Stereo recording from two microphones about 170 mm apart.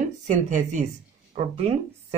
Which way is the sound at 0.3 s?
45° right (ahead or behind).